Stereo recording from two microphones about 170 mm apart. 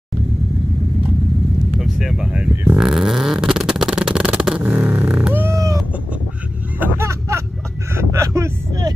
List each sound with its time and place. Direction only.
1.8 s vehicle: centre (ahead or behind); by 5.8 s 15° right (ahead or behind)
6.8 s vehicle: 15° right (ahead or behind)